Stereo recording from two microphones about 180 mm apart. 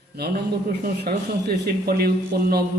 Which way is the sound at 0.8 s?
60° right (ahead or behind).